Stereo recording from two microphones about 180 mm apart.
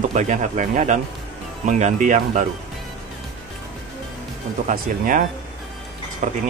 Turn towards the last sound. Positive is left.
turn(degrees=-45)  # may be behind; listen again after turning